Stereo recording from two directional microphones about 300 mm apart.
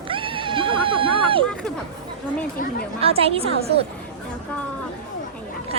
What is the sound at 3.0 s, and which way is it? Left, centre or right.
Speech, centre.